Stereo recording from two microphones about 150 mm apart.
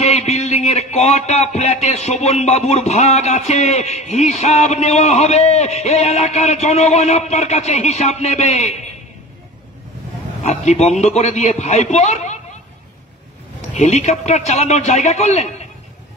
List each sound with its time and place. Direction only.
0.0 s speech: 50° left (ahead or behind)
10.4 s speech: 45° left (ahead or behind)
13.7 s speech: 50° left (ahead or behind)